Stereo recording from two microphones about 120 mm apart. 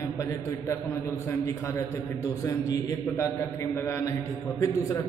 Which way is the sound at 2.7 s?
25° left (ahead or behind).